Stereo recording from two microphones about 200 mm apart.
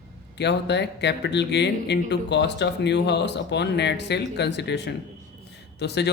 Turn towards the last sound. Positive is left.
turn(degrees=55)  # may be behind; listen again after turning